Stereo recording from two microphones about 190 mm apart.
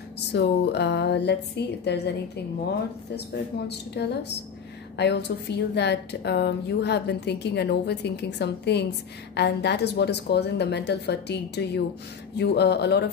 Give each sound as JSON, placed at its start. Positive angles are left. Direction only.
{"t": 0.3, "sound": "a woman's voice", "side_deg": 60}
{"t": 3.6, "sound": "a woman's voice", "side_deg": 60}